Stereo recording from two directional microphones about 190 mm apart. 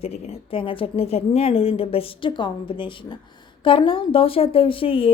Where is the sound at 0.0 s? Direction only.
30° left (ahead or behind).